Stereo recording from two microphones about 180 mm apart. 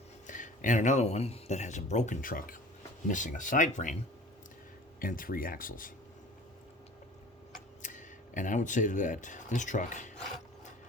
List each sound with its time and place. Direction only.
0.3 s speech: 45° left (ahead or behind)
4.9 s speech: 50° left (ahead or behind)
7.8 s speech: 45° left (ahead or behind)